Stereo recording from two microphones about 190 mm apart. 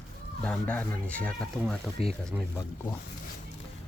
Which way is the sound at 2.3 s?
15° right (ahead or behind).